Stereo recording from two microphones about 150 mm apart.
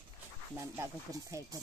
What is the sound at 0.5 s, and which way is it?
Speech, 20° right (ahead or behind).